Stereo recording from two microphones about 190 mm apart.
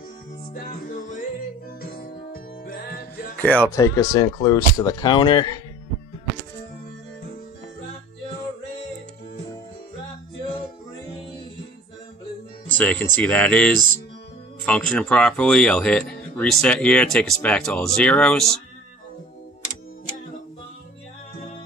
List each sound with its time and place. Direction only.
0.5 s music: 45° left (ahead or behind)
3.3 s a man's voice: 10° left (ahead or behind); by 5.6 s 25° left (ahead or behind)
12.7 s speech: 10° left (ahead or behind)